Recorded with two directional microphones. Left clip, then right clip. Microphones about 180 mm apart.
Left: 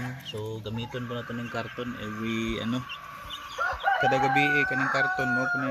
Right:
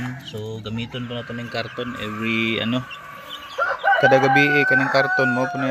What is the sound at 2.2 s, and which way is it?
Speech, 60° right (ahead or behind).